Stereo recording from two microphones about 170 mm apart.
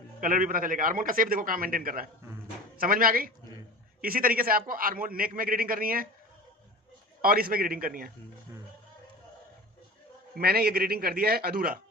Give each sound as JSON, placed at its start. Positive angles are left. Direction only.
{"t": 0.2, "sound": "a man's voice", "side_deg": -55}
{"t": 7.2, "sound": "a man's voice", "side_deg": -60}
{"t": 10.3, "sound": "a man's voice", "side_deg": -65}